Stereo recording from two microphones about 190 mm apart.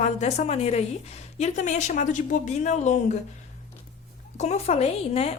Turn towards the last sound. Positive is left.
turn(degrees=35)  # may be behind; listen again after turning